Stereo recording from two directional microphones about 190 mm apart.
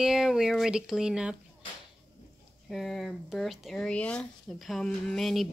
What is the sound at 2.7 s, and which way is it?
Speech, centre (ahead or behind).